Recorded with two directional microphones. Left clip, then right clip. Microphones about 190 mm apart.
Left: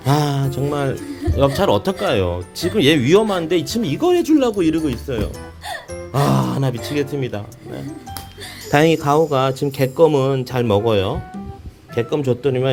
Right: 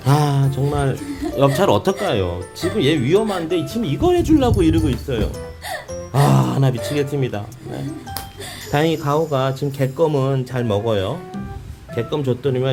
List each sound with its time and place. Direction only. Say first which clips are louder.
0.0 s speech: even; 20° left (ahead or behind)
1.4 s speech: even; 10° left (ahead or behind)
2.0 s speech: left 2 dB; 20° left (ahead or behind)
8.7 s speech: left 4 dB; 35° left (ahead or behind)